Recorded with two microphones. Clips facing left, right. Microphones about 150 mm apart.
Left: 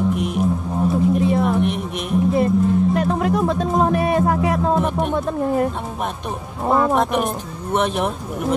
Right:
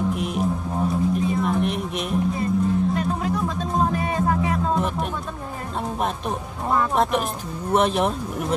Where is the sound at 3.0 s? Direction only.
60° left (ahead or behind).